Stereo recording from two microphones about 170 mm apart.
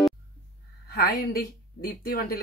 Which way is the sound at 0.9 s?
60° left (ahead or behind).